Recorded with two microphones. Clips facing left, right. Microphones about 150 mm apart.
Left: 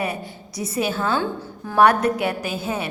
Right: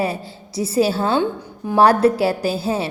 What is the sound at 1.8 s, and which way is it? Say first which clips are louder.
A woman's voice: right 3 dB; 30° right (ahead or behind).